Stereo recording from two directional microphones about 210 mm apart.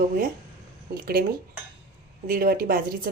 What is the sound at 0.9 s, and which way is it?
Speech, 45° right (ahead or behind).